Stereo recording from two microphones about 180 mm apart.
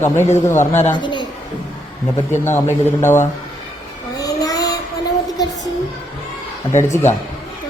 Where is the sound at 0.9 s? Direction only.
25° left (ahead or behind).